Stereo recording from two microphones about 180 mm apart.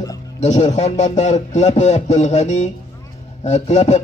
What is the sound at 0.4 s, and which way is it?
A man's voice, 40° left (ahead or behind).